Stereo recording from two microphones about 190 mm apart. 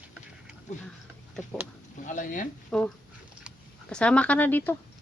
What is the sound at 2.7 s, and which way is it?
Speech, 5° left (ahead or behind).